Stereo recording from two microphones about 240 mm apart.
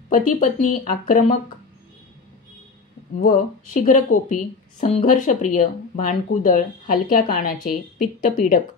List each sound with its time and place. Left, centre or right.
0.4 s a woman's voice: left
3.2 s a woman's voice: left